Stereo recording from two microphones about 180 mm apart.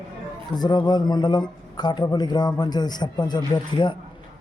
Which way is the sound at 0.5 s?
25° left (ahead or behind).